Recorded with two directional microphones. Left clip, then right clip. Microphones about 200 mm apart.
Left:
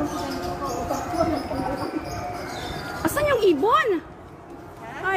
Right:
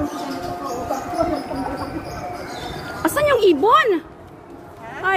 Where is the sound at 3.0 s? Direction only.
20° right (ahead or behind).